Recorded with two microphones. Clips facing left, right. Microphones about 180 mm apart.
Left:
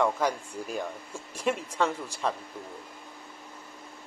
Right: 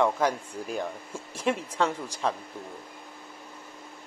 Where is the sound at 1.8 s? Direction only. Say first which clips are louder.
Right 1 dB; 10° right (ahead or behind).